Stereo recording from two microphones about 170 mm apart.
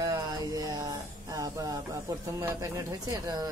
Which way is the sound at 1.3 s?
20° right (ahead or behind).